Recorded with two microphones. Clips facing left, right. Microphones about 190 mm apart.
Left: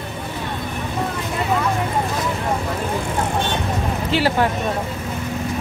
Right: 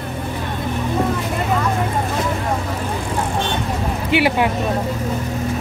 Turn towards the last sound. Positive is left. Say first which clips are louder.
# right 2 dB
turn(degrees=-15)  # may be behind; listen again after turning